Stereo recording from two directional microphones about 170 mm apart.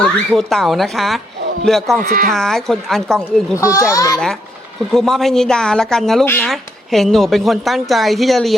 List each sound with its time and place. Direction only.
0.0 s speech: centre (ahead or behind)
2.0 s speech: 60° right (ahead or behind)
2.3 s speech: centre (ahead or behind)
3.6 s a child's voice: 20° left (ahead or behind)
4.9 s speech: centre (ahead or behind)
6.2 s speech: 15° left (ahead or behind)
6.5 s speech: centre (ahead or behind)